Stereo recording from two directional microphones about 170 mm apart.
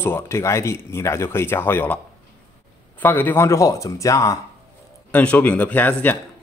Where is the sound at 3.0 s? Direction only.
10° left (ahead or behind).